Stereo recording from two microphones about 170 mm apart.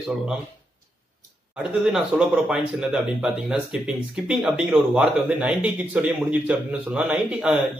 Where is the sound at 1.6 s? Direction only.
5° right (ahead or behind).